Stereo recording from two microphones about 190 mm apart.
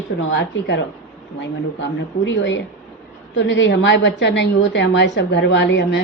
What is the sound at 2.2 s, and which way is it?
A woman's voice, 75° left (ahead or behind).